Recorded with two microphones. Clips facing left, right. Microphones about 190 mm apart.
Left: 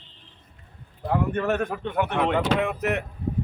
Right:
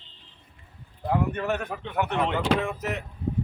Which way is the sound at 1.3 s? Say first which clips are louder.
Left 4 dB; 45° left (ahead or behind).